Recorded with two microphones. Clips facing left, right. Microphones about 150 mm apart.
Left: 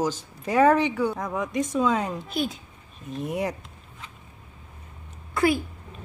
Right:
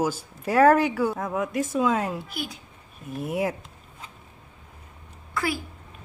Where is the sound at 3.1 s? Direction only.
10° right (ahead or behind).